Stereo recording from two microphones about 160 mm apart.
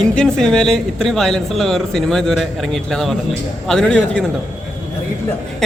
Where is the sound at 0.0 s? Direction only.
5° left (ahead or behind).